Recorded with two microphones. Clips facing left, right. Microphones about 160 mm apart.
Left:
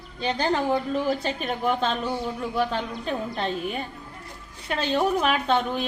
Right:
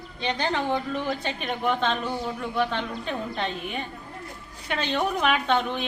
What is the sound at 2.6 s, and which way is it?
A woman's voice, 40° left (ahead or behind).